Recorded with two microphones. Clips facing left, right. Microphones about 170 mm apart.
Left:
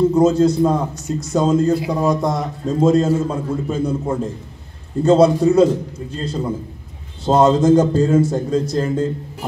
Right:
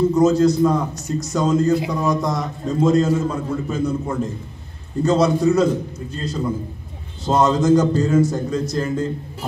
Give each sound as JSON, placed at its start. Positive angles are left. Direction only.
{"t": 0.1, "sound": "a man's voice", "side_deg": 30}